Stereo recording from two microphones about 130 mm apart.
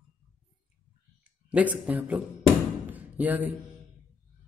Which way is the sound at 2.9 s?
15° right (ahead or behind).